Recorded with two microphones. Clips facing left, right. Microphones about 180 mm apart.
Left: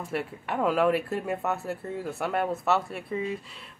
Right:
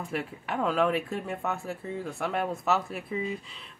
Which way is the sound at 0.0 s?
Centre (ahead or behind).